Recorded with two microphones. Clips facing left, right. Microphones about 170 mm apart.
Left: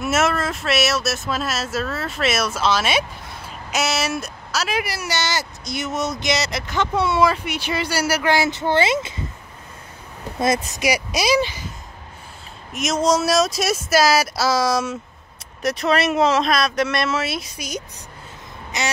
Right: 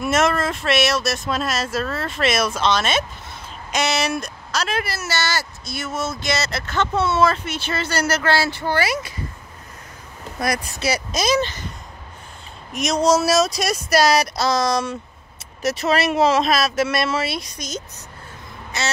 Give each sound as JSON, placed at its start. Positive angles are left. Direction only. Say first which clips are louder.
{"t": 0.0, "sound": "speech", "louder": "right 1 dB", "side_deg": 5}
{"t": 10.4, "sound": "speech", "louder": "left 3 dB", "side_deg": 20}
{"t": 12.7, "sound": "speech", "louder": "right 1 dB", "side_deg": 0}